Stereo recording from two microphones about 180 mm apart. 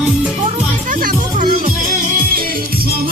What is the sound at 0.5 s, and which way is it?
Music, 45° right (ahead or behind).